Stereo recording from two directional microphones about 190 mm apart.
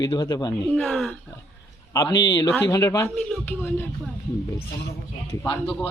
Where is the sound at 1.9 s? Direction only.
20° left (ahead or behind).